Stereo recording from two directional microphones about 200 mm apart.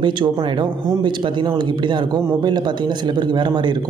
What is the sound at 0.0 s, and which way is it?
Speech, 25° right (ahead or behind).